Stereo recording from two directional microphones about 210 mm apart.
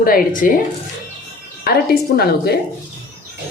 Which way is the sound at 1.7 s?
45° left (ahead or behind).